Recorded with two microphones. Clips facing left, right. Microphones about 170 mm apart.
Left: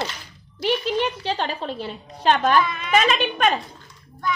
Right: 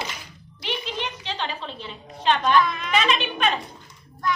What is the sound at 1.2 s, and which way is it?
A child's voice, 45° left (ahead or behind).